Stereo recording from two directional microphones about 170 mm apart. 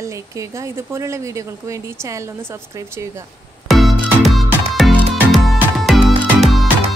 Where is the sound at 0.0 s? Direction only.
20° right (ahead or behind).